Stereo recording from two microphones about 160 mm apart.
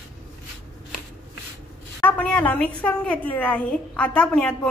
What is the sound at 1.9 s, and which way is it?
A woman's voice, 10° left (ahead or behind).